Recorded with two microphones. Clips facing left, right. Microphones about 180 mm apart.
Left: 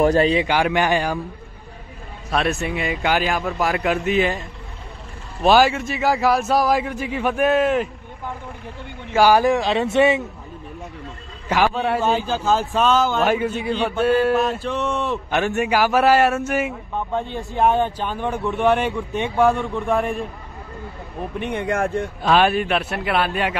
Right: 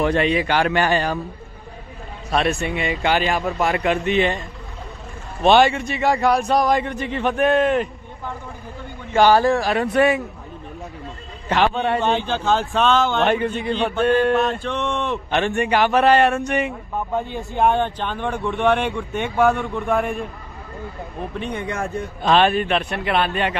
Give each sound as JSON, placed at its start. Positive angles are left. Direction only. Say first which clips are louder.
{"t": 0.0, "sound": "a man's voice", "louder": "left 3 dB", "side_deg": 40}
{"t": 0.5, "sound": "a man's voice", "louder": "even", "side_deg": 10}
{"t": 2.3, "sound": "speech", "louder": "right 1 dB", "side_deg": 0}
{"t": 9.1, "sound": "speech", "louder": "even", "side_deg": 10}
{"t": 11.4, "sound": "speech", "louder": "even", "side_deg": 10}
{"t": 21.6, "sound": "a man's voice", "louder": "left 5 dB", "side_deg": 55}
{"t": 22.2, "sound": "a man's voice", "louder": "right 1 dB", "side_deg": 10}